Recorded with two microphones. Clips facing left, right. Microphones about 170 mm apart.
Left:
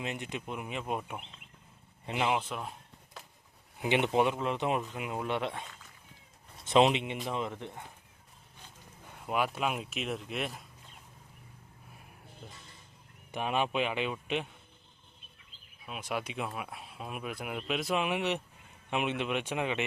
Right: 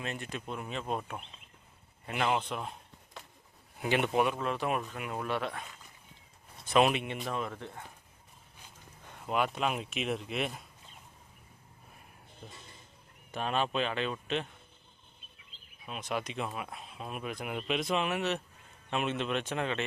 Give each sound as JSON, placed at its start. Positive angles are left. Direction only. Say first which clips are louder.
{"t": 0.0, "sound": "speech", "louder": "left 1 dB", "side_deg": 20}
{"t": 2.2, "sound": "speech", "louder": "even", "side_deg": 5}
{"t": 3.2, "sound": "a sound", "louder": "right 1 dB", "side_deg": 0}
{"t": 3.8, "sound": "speech", "louder": "left 1 dB", "side_deg": 20}
{"t": 6.7, "sound": "speech", "louder": "left 2 dB", "side_deg": 20}
{"t": 9.0, "sound": "speech", "louder": "even", "side_deg": 5}
{"t": 13.3, "sound": "speech", "louder": "left 1 dB", "side_deg": 15}
{"t": 15.9, "sound": "speech", "louder": "right 1 dB", "side_deg": 5}